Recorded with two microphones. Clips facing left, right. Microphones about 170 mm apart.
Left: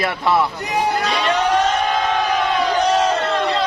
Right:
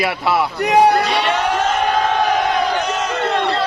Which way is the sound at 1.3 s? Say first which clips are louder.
Left 1 dB; 35° left (ahead or behind).